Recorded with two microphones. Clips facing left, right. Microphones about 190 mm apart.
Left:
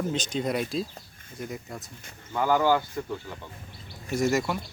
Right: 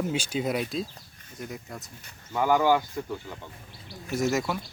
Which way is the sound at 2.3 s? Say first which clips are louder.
Right 1 dB; 15° right (ahead or behind).